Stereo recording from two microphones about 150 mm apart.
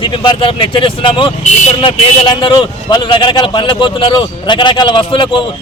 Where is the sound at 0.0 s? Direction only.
30° left (ahead or behind).